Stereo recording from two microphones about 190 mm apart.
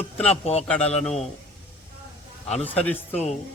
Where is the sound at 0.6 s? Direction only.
5° left (ahead or behind).